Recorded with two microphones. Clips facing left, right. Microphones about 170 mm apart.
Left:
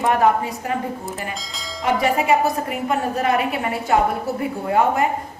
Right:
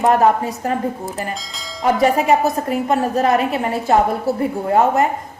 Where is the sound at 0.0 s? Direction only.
40° right (ahead or behind).